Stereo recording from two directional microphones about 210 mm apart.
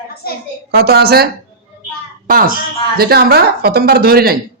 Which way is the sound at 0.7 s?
50° right (ahead or behind).